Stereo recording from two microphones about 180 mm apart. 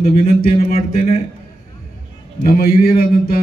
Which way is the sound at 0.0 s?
55° left (ahead or behind).